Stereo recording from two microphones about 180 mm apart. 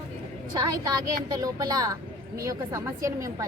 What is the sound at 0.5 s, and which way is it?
A woman's voice, 20° right (ahead or behind).